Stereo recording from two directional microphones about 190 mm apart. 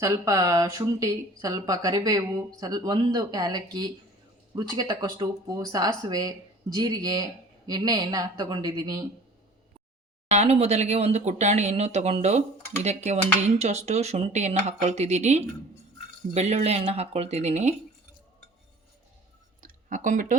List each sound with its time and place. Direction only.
0.0 s speech: 15° right (ahead or behind)
10.3 s speech: 35° right (ahead or behind)
19.6 s a sound: 40° right (ahead or behind)